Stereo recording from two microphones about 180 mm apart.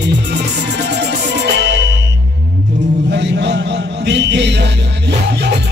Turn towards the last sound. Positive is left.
turn(degrees=-70)  # may be behind; listen again after turning